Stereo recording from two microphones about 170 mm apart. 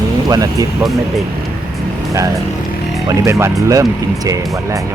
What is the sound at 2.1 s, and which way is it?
Speech, 20° right (ahead or behind).